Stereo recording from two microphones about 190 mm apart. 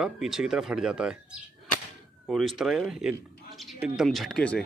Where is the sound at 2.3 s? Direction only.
Centre (ahead or behind).